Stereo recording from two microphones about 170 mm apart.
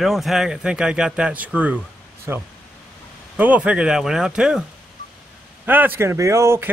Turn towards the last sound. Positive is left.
turn(degrees=-15)  # may be behind; listen again after turning